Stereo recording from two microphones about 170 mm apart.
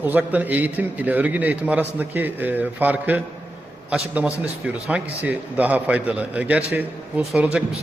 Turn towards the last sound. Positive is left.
turn(degrees=-5)  # may be behind; listen again after turning